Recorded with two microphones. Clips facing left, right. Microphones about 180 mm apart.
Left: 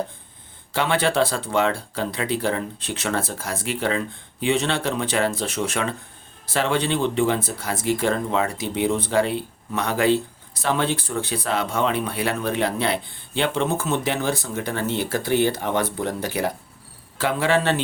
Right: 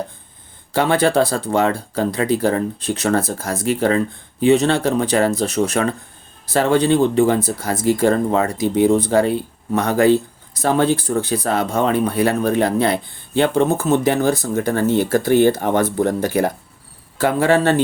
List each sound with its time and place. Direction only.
0.7 s speech: 40° right (ahead or behind)